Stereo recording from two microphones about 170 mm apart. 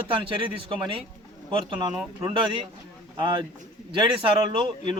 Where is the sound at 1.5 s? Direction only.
25° right (ahead or behind).